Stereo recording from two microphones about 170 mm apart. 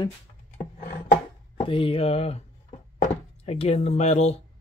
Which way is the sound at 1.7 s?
30° left (ahead or behind).